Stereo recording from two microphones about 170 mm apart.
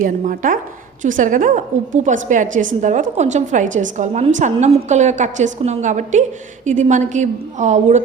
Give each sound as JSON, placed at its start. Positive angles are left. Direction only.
{"t": 0.0, "sound": "a woman's voice", "side_deg": -50}